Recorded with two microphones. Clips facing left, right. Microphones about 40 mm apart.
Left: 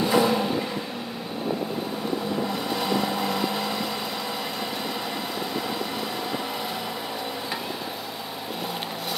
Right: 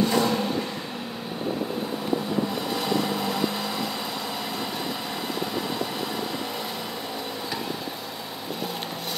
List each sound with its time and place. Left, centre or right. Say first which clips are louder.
0.0 s vehicle: left 2 dB; centre
2.7 s vehicle: left 1 dB; centre